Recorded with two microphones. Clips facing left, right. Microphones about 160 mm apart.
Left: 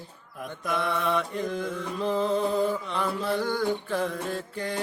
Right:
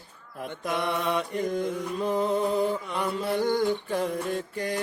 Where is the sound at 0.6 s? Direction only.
20° right (ahead or behind).